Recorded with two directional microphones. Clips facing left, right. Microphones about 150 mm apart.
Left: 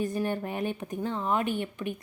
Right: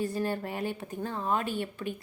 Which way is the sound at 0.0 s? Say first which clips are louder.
Left 1 dB; 20° left (ahead or behind).